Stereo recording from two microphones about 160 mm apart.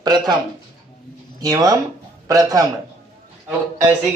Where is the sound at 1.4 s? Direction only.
25° right (ahead or behind).